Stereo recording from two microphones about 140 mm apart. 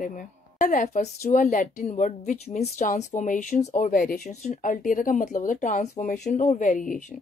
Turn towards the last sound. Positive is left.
turn(degrees=70)  # may be behind; listen again after turning